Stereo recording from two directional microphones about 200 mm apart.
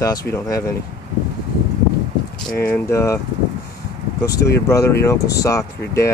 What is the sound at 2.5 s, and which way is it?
Speech, 15° left (ahead or behind).